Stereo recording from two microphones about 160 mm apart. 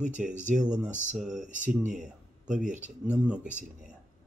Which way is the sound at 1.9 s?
5° right (ahead or behind).